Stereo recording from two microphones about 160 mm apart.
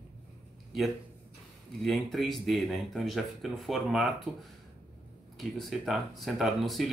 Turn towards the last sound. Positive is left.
turn(degrees=0)  # may be behind; listen again after turning